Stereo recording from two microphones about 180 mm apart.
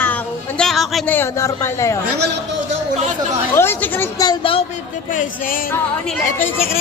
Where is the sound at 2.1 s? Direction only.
70° right (ahead or behind).